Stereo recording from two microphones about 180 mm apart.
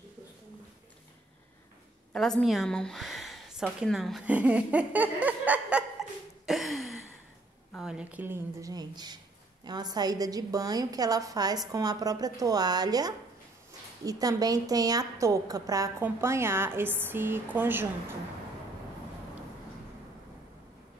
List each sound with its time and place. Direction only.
2.1 s a woman's voice: centre (ahead or behind)
6.4 s a sound: centre (ahead or behind)
7.7 s a woman's voice: 5° right (ahead or behind)